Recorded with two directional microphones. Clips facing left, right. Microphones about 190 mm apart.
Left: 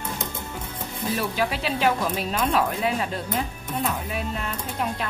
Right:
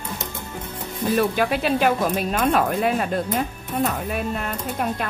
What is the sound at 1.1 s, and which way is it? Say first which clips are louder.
Speech: right 6 dB; 50° right (ahead or behind).